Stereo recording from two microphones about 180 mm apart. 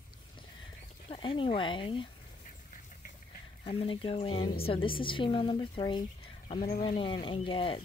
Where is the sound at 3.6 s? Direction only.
30° left (ahead or behind).